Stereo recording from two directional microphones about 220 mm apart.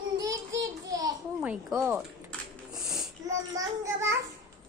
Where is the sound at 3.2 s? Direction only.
15° right (ahead or behind).